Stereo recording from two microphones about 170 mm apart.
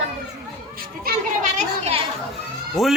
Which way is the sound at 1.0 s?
50° right (ahead or behind).